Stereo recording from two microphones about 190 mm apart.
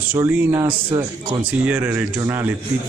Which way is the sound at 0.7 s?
25° right (ahead or behind).